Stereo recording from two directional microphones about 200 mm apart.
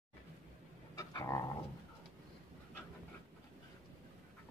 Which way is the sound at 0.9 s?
15° left (ahead or behind).